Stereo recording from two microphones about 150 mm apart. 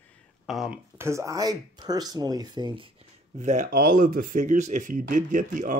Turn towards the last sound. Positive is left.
turn(degrees=-60)  # may be behind; listen again after turning